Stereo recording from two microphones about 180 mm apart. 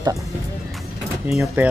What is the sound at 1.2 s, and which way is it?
Speech, 5° right (ahead or behind).